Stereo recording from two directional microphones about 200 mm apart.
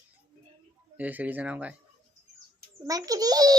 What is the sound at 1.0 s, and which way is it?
Speech, 10° right (ahead or behind).